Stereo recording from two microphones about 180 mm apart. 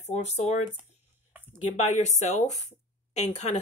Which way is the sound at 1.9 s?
40° left (ahead or behind).